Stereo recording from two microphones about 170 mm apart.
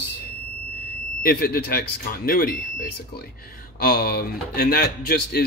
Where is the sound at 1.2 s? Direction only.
60° left (ahead or behind).